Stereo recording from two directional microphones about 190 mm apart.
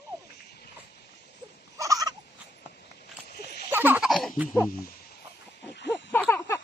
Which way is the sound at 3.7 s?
10° right (ahead or behind).